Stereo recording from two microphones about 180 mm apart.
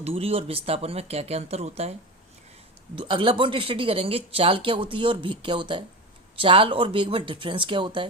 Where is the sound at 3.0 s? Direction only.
30° right (ahead or behind).